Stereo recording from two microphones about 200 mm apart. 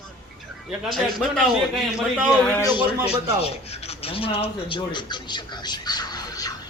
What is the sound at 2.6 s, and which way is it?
Speech, 20° left (ahead or behind).